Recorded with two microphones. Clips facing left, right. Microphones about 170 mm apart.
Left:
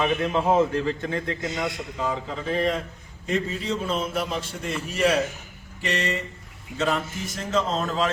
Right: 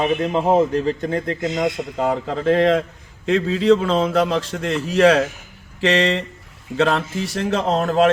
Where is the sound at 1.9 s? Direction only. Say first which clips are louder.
Right 7 dB; 65° right (ahead or behind).